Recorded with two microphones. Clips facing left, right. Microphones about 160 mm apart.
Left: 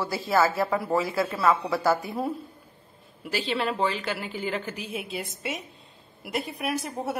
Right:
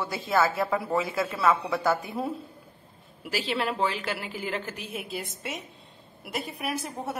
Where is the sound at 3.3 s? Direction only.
Centre (ahead or behind).